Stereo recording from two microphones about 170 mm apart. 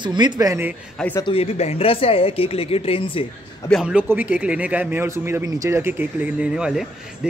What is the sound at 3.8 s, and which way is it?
Speech, 10° right (ahead or behind).